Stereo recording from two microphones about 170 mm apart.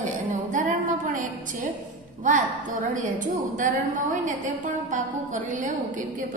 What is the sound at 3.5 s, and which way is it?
A woman's voice, 50° right (ahead or behind).